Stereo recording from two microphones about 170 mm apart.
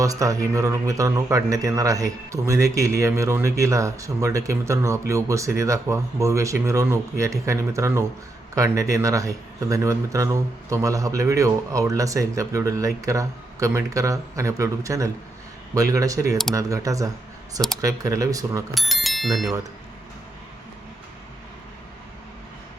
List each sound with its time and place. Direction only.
0.0 s a man's voice: 20° right (ahead or behind)
18.7 s speech: centre (ahead or behind)